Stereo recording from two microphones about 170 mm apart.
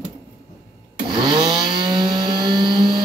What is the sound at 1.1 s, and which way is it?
Chainsaw, 25° right (ahead or behind).